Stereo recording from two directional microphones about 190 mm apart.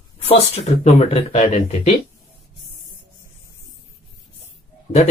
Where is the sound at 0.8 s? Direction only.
35° left (ahead or behind).